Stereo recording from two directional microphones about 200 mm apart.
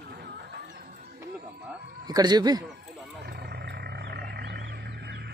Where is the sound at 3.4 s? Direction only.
55° right (ahead or behind).